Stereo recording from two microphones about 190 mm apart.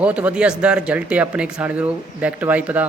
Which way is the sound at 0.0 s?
5° right (ahead or behind).